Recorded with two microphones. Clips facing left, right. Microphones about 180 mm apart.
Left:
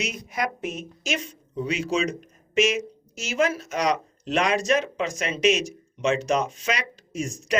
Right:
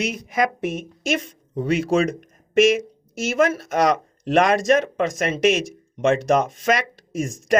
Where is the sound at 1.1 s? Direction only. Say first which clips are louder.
Right 5 dB; 55° right (ahead or behind).